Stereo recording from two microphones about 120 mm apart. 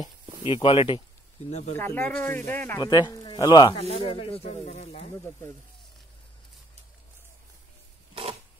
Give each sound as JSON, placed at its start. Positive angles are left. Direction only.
{"t": 0.5, "sound": "speech", "side_deg": 50}
{"t": 1.8, "sound": "speech", "side_deg": 20}
{"t": 2.8, "sound": "speech", "side_deg": 35}
{"t": 3.9, "sound": "speech", "side_deg": 50}
{"t": 5.1, "sound": "speech", "side_deg": 25}
{"t": 8.1, "sound": "a sound", "side_deg": -50}